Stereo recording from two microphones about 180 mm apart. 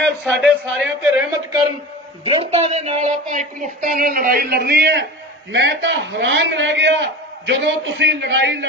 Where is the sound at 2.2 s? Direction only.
30° right (ahead or behind); by 5.0 s 65° right (ahead or behind).